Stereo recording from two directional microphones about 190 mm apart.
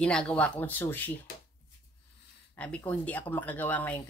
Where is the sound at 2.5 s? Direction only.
5° left (ahead or behind).